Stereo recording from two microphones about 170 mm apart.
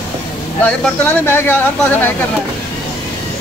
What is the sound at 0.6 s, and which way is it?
Speech, 10° left (ahead or behind).